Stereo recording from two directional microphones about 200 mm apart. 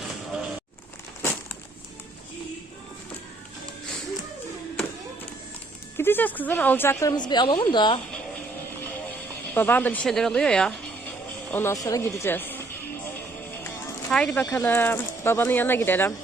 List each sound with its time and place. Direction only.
6.0 s speech: 10° left (ahead or behind)
9.6 s speech: 10° left (ahead or behind)
13.7 s a sound: 15° left (ahead or behind)
14.2 s speech: 5° left (ahead or behind)